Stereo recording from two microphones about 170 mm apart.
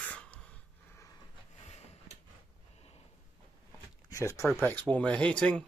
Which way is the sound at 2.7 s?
35° left (ahead or behind).